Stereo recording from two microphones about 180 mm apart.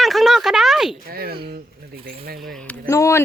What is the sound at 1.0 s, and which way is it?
Speech, 55° right (ahead or behind).